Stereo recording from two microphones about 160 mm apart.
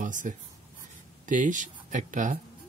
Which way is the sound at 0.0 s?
55° right (ahead or behind).